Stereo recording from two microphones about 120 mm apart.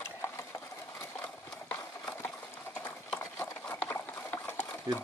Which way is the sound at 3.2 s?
20° left (ahead or behind).